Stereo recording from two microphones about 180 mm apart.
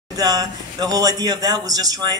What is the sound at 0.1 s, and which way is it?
A man's voice, 20° right (ahead or behind).